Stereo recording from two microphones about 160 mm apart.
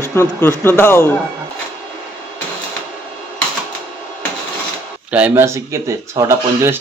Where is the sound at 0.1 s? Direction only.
15° left (ahead or behind).